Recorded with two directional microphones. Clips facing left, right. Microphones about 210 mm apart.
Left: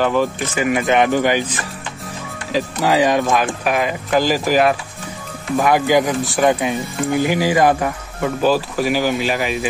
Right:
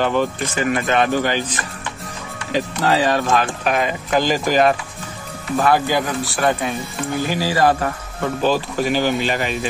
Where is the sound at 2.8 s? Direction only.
15° left (ahead or behind).